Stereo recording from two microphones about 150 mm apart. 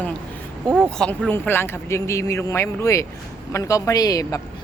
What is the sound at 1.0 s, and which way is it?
Speech, 10° left (ahead or behind).